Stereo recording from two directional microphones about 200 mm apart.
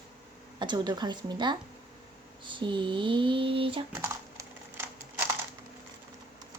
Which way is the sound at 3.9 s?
15° right (ahead or behind).